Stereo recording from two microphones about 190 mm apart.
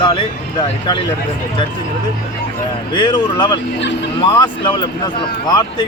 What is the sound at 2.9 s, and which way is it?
Speech, 25° left (ahead or behind).